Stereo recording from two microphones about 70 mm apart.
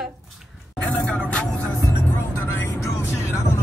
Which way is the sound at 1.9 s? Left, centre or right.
Left.